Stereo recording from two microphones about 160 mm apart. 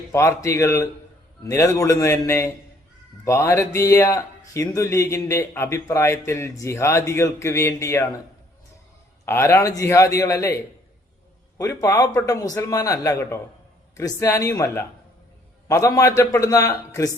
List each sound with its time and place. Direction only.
0.1 s a man's voice: 20° left (ahead or behind)
9.2 s a man's voice: 15° left (ahead or behind)
11.5 s a man's voice: 20° left (ahead or behind)